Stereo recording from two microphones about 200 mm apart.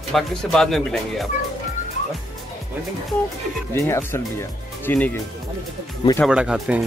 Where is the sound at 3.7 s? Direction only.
10° left (ahead or behind).